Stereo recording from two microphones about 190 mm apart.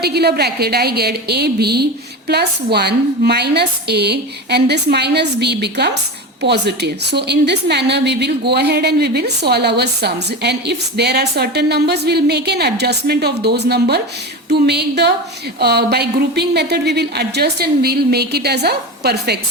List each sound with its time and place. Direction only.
0.0 s a woman's voice: 60° right (ahead or behind)